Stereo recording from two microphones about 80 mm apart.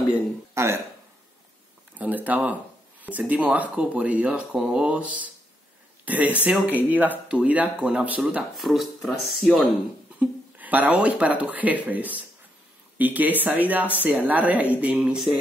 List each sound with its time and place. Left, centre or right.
0.6 s speech: right
2.0 s speech: right
4.6 s speech: centre
4.8 s speech: centre
8.5 s speech: centre
10.1 s speech: centre